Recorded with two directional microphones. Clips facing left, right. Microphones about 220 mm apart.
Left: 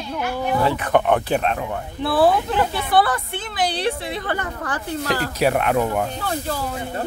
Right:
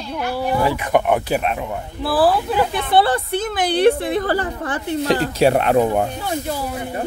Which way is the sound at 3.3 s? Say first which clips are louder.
Right 5 dB; 45° right (ahead or behind).